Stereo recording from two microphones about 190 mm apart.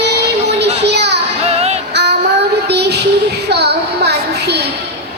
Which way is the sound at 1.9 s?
60° right (ahead or behind).